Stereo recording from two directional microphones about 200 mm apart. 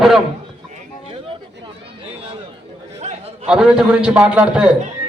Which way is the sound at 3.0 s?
35° right (ahead or behind).